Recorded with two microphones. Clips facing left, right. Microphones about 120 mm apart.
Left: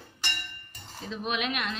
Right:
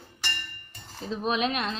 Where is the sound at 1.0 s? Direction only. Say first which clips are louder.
Right 4 dB; 35° right (ahead or behind).